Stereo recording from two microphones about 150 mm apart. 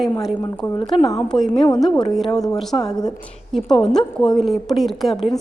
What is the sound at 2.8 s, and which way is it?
Speech, 25° left (ahead or behind).